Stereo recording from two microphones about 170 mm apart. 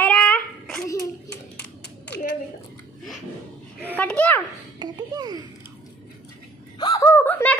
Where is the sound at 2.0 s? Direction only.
80° left.